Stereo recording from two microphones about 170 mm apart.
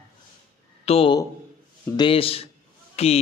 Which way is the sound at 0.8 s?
35° left (ahead or behind).